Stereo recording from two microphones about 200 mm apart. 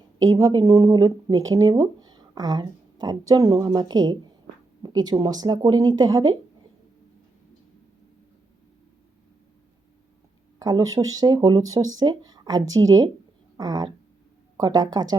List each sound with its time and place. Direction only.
0.2 s a woman's voice: 15° right (ahead or behind)
10.6 s speech: 20° right (ahead or behind)